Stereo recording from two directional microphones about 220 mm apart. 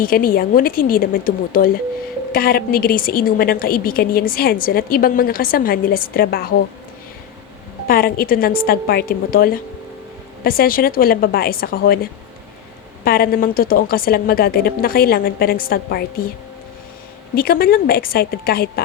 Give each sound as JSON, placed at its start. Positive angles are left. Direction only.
{"t": 0.0, "sound": "a woman's voice", "side_deg": 40}
{"t": 7.9, "sound": "a woman's voice", "side_deg": 45}
{"t": 13.1, "sound": "a woman's voice", "side_deg": 45}
{"t": 17.3, "sound": "a woman's voice", "side_deg": 40}